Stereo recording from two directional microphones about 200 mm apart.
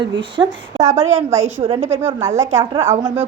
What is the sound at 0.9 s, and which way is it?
Speech, 15° right (ahead or behind).